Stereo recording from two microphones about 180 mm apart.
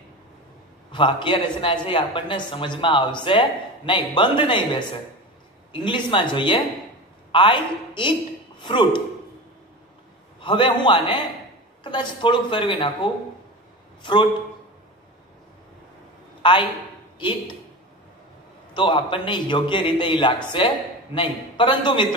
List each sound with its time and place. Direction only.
0.9 s a man's voice: 25° left (ahead or behind)
10.4 s a man's voice: 25° left (ahead or behind)
16.4 s a man's voice: 25° left (ahead or behind)
18.7 s a man's voice: 25° left (ahead or behind)